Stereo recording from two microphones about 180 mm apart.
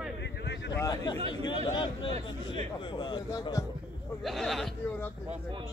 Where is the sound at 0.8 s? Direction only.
20° left (ahead or behind).